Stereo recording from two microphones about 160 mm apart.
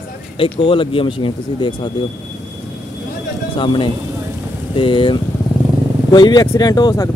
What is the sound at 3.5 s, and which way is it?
Speech, 30° left (ahead or behind).